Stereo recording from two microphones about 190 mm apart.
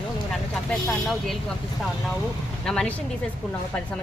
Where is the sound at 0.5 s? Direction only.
Centre (ahead or behind).